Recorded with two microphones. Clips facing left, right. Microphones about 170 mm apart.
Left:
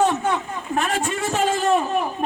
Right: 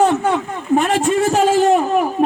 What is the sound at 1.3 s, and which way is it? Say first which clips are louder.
Speech: right 4 dB; 90° right.